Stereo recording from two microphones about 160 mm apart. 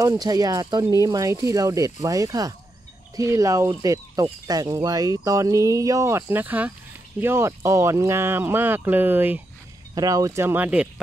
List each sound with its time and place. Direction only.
0.0 s speech: 20° right (ahead or behind)